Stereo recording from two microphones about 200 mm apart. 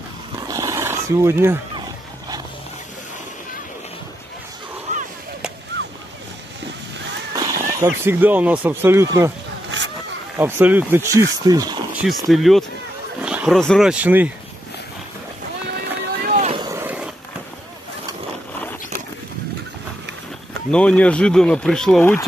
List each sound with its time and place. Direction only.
0.5 s roaring cats: 15° right (ahead or behind)
4.9 s whip: 35° right (ahead or behind)
5.7 s boat: 60° right (ahead or behind)
7.3 s speech: 15° right (ahead or behind)
10.3 s speech: 10° right (ahead or behind)
11.9 s speech: 5° right (ahead or behind)
15.7 s boat: 55° right (ahead or behind)
16.5 s vehicle: 20° right (ahead or behind)
16.8 s skateboard: 10° right (ahead or behind)
20.7 s speech: 5° left (ahead or behind)